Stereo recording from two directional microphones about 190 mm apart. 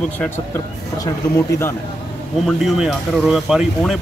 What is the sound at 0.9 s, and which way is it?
Speech, 15° left (ahead or behind).